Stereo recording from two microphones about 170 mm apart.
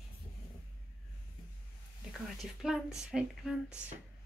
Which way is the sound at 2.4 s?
Centre (ahead or behind).